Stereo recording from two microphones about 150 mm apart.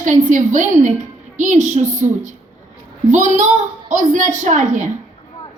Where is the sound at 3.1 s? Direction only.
55° right (ahead or behind).